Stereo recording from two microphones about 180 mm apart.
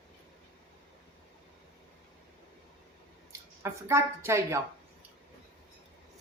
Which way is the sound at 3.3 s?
15° right (ahead or behind).